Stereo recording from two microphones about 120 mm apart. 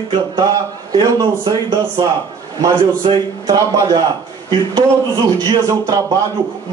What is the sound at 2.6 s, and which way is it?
Speech, 40° right (ahead or behind).